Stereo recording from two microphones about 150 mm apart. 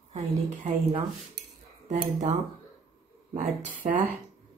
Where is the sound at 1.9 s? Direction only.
55° right (ahead or behind).